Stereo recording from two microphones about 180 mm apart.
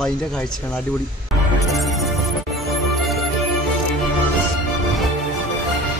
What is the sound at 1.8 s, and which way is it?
Music, centre (ahead or behind).